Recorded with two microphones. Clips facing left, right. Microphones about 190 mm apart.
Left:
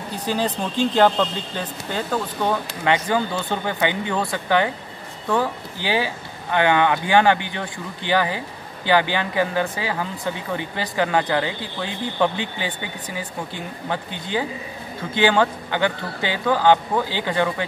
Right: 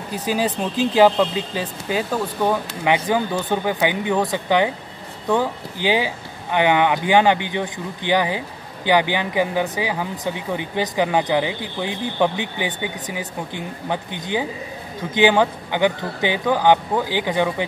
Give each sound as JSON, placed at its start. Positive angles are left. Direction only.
{"t": 0.1, "sound": "speech", "side_deg": -10}